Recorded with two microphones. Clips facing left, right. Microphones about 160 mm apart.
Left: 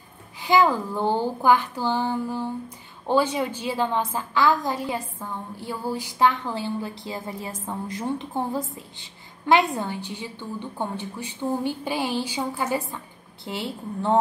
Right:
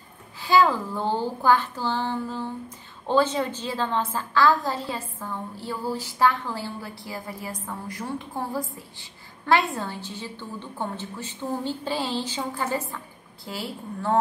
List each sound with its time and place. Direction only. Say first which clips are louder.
0.4 s a woman's voice: even; 15° left (ahead or behind)
13.4 s a woman's voice: left 3 dB; 25° left (ahead or behind)